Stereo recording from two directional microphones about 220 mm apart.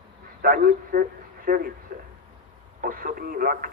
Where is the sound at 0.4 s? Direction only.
40° right (ahead or behind).